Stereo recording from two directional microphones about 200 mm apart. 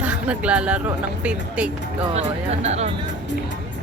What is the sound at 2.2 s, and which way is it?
Speech, 35° right (ahead or behind).